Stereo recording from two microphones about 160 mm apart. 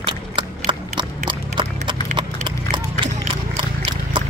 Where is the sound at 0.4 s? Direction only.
30° right (ahead or behind).